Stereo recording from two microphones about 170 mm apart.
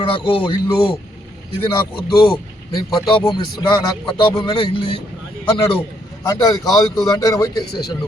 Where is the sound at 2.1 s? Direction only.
30° left (ahead or behind).